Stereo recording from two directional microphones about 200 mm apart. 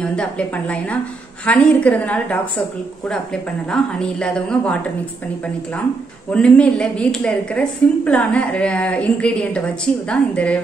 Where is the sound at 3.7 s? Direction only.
5° left (ahead or behind).